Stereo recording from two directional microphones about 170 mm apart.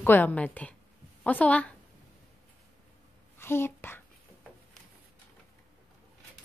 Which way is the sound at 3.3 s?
15° left (ahead or behind).